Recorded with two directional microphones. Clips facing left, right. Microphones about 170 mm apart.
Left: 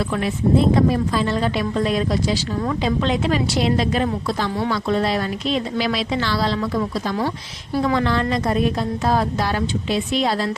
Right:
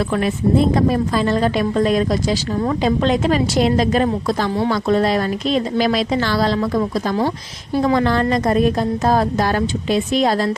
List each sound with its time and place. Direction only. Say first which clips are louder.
0.8 s a woman's voice: right 1 dB; 45° right (ahead or behind)